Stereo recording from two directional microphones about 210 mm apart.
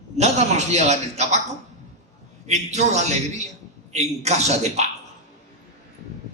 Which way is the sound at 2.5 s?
35° right (ahead or behind).